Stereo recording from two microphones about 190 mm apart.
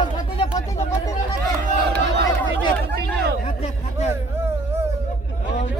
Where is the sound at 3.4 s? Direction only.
35° left (ahead or behind).